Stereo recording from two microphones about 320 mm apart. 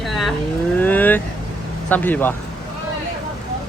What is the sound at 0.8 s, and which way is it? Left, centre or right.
Vehicle, centre.